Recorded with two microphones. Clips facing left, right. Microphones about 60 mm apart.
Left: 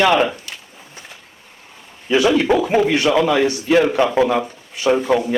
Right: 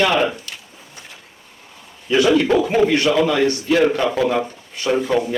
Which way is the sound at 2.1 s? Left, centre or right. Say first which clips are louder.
Even; centre.